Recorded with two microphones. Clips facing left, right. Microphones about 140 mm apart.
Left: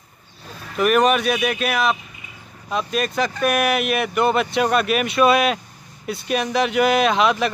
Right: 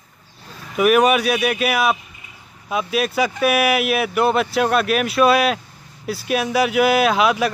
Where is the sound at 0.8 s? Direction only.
5° right (ahead or behind).